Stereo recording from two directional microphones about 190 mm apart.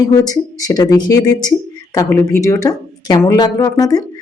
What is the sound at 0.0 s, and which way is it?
Speech, 20° left (ahead or behind).